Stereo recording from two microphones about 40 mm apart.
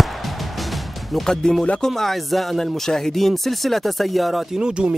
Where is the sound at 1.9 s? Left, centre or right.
Centre.